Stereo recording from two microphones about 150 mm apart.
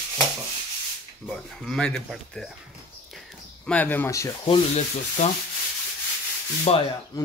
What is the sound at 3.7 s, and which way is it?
Speech, 10° left (ahead or behind).